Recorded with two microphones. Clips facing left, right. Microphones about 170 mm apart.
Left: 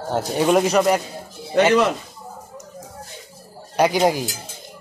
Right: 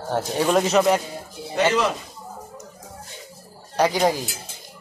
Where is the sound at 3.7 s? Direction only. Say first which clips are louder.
Left 2 dB; 15° left (ahead or behind).